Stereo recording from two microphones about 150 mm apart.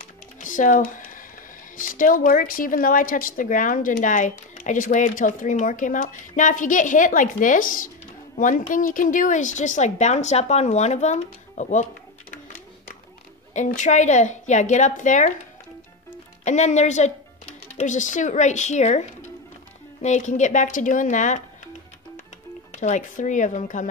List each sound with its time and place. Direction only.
0.0 s music: 60° left (ahead or behind)
1.8 s speech: 65° left (ahead or behind)
13.5 s a woman's voice: 55° left (ahead or behind)
16.4 s a woman's voice: 50° left (ahead or behind)
22.7 s speech: 55° left (ahead or behind)